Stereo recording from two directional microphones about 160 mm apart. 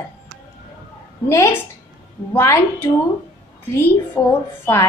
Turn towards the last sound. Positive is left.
turn(degrees=15)  # may be behind; listen again after turning